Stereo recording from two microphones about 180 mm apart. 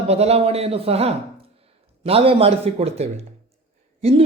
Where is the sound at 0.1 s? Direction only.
35° right (ahead or behind).